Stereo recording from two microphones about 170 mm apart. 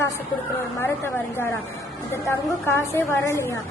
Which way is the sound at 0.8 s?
15° left (ahead or behind).